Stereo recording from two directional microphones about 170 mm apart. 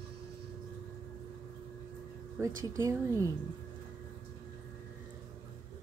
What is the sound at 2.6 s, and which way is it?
Speech, 20° right (ahead or behind).